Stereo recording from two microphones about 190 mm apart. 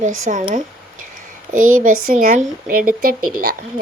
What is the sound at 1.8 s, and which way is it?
Speech, 45° right (ahead or behind).